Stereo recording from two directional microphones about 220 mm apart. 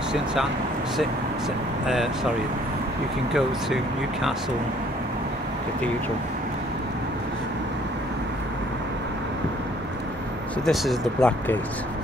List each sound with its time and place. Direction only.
0.1 s speech: 5° right (ahead or behind)
3.3 s speech: centre (ahead or behind)
10.6 s speech: centre (ahead or behind)